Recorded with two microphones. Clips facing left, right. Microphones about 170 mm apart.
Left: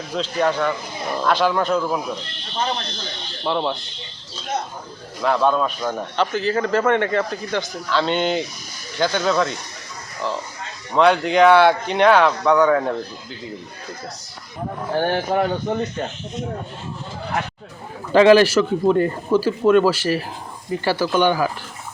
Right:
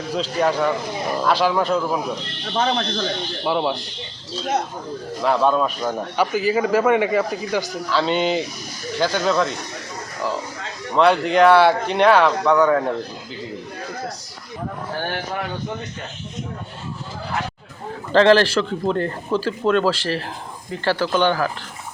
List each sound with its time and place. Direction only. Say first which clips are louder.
0.3 s a man's voice: right 1 dB; 5° right (ahead or behind)
2.5 s speech: right 4 dB; 70° right (ahead or behind)
3.4 s speech: right 1 dB; 10° right (ahead or behind)
5.2 s a man's voice: even; 5° right (ahead or behind)
10.9 s a man's voice: even; centre (ahead or behind)
15.1 s speech: left 7 dB; 40° left (ahead or behind)
18.1 s speech: left 2 dB; 10° left (ahead or behind)